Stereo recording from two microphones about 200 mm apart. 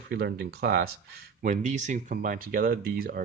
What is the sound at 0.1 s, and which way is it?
Speech, 55° right (ahead or behind).